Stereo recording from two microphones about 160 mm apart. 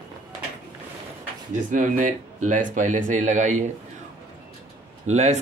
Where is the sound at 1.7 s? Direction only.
55° right (ahead or behind).